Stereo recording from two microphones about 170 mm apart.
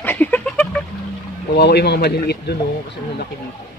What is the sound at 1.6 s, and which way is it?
Speech, 75° left (ahead or behind).